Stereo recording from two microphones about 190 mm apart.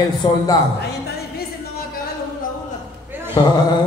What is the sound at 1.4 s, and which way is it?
Music, 55° left (ahead or behind).